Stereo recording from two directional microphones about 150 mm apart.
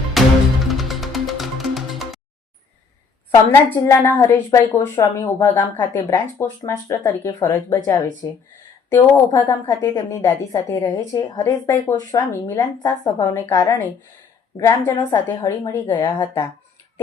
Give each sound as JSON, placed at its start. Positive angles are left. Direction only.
{"t": 0.2, "sound": "music", "side_deg": 0}
{"t": 3.5, "sound": "a woman's voice", "side_deg": 15}
{"t": 15.4, "sound": "a woman's voice", "side_deg": 15}